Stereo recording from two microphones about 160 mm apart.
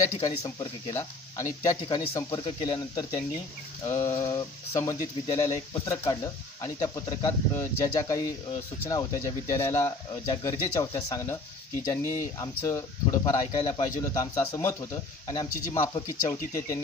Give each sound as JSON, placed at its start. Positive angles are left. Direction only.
{"t": 0.0, "sound": "speech", "side_deg": 20}
{"t": 3.8, "sound": "a sound", "side_deg": 15}
{"t": 5.4, "sound": "speech", "side_deg": 20}